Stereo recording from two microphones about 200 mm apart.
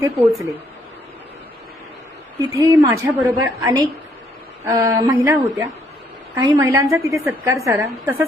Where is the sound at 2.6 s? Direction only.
15° right (ahead or behind).